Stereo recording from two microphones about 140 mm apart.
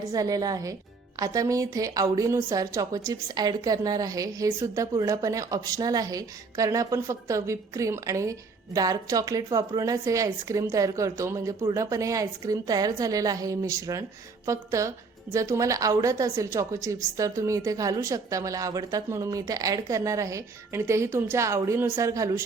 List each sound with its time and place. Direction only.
0.1 s a woman's voice: 25° right (ahead or behind)